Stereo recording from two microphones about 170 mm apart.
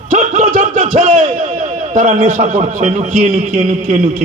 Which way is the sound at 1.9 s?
45° right (ahead or behind).